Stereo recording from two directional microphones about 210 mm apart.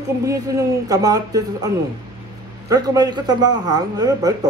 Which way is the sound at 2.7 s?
15° right (ahead or behind).